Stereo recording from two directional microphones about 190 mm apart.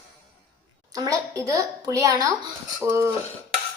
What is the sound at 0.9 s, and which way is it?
Speech, 20° right (ahead or behind).